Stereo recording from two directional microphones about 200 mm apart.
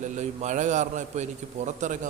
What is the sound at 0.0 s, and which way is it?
A man's voice, 35° right (ahead or behind).